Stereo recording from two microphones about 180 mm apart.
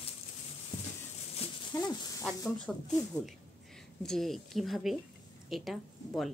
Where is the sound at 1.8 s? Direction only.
20° left (ahead or behind).